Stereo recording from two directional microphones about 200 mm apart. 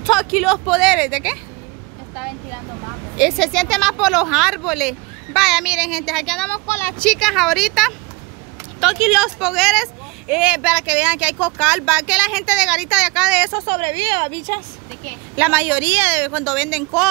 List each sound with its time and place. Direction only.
0.0 s speech: centre (ahead or behind)
3.2 s speech: centre (ahead or behind)
6.5 s speech: 10° left (ahead or behind); by 13.5 s 5° right (ahead or behind)
13.5 s a woman's voice: 25° right (ahead or behind)
15.3 s speech: 5° right (ahead or behind)